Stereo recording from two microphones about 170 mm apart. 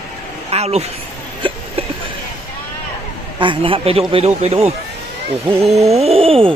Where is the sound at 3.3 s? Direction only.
30° right (ahead or behind).